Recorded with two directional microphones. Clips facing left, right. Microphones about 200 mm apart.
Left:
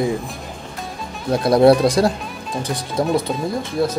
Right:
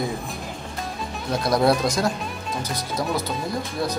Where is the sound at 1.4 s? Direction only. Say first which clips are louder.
Left 8 dB; 30° left (ahead or behind).